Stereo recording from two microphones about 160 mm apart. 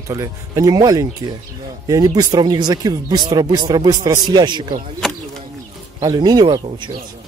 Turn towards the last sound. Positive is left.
turn(degrees=-25)  # may be behind; listen again after turning